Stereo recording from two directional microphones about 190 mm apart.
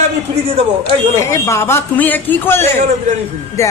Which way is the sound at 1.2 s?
15° left (ahead or behind).